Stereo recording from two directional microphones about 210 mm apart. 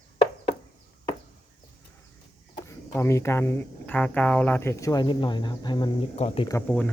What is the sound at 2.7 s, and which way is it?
Speech, 15° left (ahead or behind).